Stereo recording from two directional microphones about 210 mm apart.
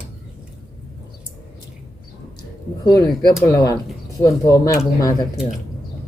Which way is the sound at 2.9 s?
15° left (ahead or behind).